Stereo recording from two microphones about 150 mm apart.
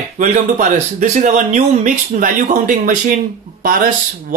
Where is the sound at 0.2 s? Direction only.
55° right (ahead or behind).